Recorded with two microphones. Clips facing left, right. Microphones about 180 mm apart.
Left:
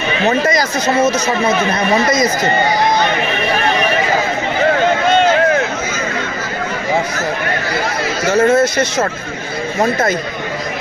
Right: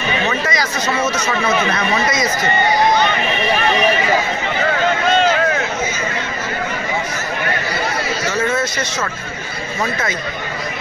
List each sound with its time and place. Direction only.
0.3 s speech: 45° left (ahead or behind)
8.3 s speech: 50° left (ahead or behind)